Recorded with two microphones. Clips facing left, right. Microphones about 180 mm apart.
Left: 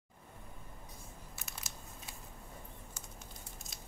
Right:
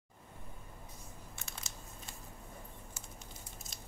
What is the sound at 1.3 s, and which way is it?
Crushing, centre (ahead or behind).